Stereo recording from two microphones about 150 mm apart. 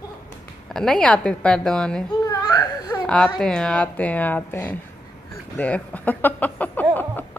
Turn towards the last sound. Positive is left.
turn(degrees=10)  # may be behind; listen again after turning